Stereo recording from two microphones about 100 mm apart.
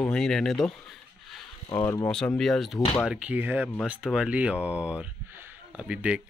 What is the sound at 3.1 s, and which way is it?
Speech, 15° right (ahead or behind).